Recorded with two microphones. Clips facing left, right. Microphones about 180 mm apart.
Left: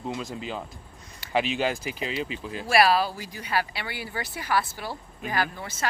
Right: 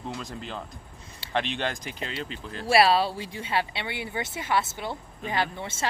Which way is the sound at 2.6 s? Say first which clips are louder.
Right 1 dB; 30° right (ahead or behind).